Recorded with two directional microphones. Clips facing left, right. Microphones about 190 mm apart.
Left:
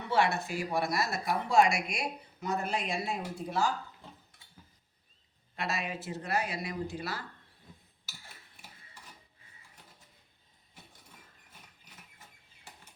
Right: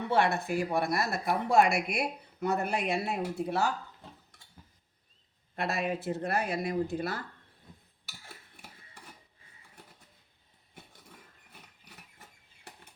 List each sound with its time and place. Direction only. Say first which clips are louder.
0.1 s speech: right 1 dB; 55° right (ahead or behind)
5.5 s speech: right 4 dB; 55° right (ahead or behind)